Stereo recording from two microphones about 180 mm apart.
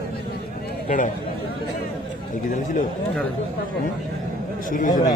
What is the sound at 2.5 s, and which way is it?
Speech, 45° left (ahead or behind).